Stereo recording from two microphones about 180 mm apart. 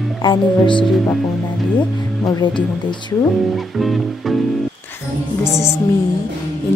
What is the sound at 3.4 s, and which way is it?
Music, centre (ahead or behind).